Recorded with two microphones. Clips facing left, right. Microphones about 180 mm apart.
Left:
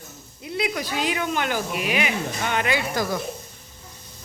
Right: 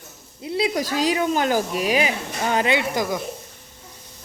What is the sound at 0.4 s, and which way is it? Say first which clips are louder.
Speech: right 4 dB; 30° right (ahead or behind).